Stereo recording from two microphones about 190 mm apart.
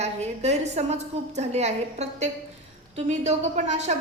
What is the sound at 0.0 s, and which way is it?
A woman's voice, 35° right (ahead or behind).